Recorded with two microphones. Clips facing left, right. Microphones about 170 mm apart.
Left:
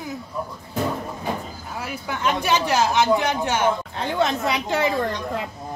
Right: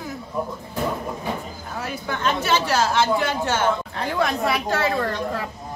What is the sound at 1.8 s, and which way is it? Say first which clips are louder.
A woman's voice: right 1 dB; 10° left (ahead or behind).